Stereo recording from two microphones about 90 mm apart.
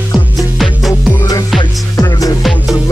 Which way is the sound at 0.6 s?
Centre (ahead or behind).